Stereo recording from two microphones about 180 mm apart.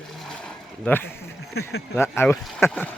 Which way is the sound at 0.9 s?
10° left (ahead or behind).